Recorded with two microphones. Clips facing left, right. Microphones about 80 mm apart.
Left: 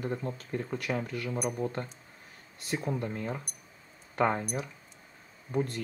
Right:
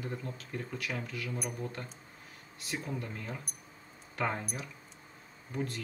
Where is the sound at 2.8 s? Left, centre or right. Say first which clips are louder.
Left 6 dB; left.